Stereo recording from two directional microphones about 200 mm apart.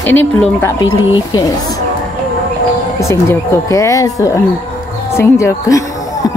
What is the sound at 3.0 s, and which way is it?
A woman's voice, 15° left (ahead or behind).